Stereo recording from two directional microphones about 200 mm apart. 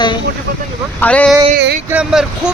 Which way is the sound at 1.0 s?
5° left (ahead or behind).